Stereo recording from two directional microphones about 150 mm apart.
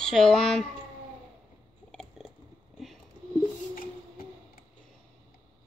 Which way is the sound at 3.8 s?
75° left (ahead or behind).